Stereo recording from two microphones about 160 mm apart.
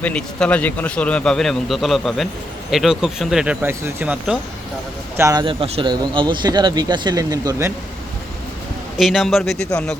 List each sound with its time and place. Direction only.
0.0 s a man's voice: 5° left (ahead or behind)
5.1 s speech: 20° right (ahead or behind)
9.0 s a man's voice: centre (ahead or behind)